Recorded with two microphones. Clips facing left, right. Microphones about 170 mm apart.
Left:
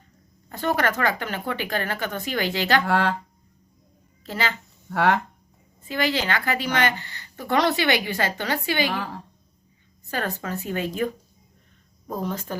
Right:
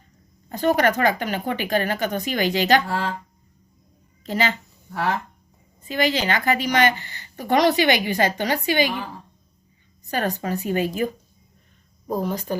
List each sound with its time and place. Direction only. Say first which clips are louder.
0.4 s speech: right 5 dB; 15° right (ahead or behind)
2.8 s speech: left 4 dB; 65° left (ahead or behind)
4.2 s speech: right 4 dB; 20° right (ahead or behind)
4.9 s speech: left 4 dB; 70° left (ahead or behind)
5.8 s speech: right 3 dB; 20° right (ahead or behind)
10.1 s speech: right 4 dB; 15° right (ahead or behind)